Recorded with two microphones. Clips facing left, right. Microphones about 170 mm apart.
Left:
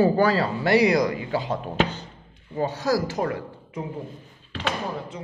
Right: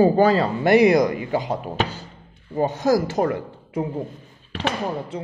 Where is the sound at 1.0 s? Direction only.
15° right (ahead or behind).